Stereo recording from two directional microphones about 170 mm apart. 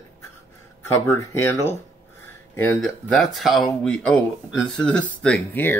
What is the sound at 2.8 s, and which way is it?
Speech, centre (ahead or behind).